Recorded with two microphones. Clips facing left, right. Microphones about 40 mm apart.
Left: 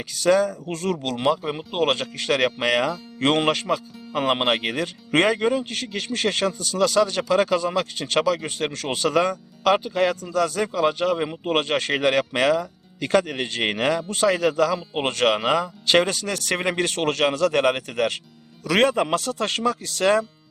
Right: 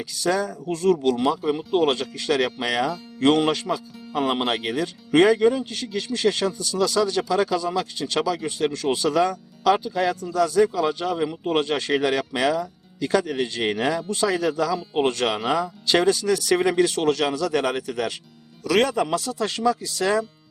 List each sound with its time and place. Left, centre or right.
0.0 s speech: left
1.5 s speech: left
1.8 s speech: left
18.6 s speech: left